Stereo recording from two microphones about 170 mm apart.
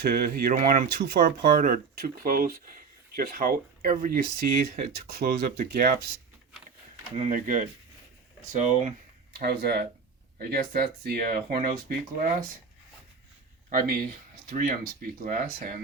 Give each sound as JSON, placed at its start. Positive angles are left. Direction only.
{"t": 0.0, "sound": "speech", "side_deg": -65}
{"t": 7.2, "sound": "speech", "side_deg": -50}
{"t": 9.4, "sound": "speech", "side_deg": -65}
{"t": 10.3, "sound": "speech", "side_deg": -55}
{"t": 13.7, "sound": "speech", "side_deg": -60}